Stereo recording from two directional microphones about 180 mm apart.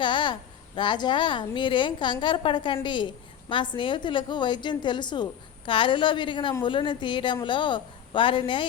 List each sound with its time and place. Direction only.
0.0 s a woman's voice: 25° left (ahead or behind)